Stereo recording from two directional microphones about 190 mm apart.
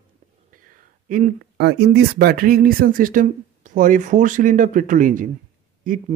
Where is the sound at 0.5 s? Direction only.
45° right (ahead or behind).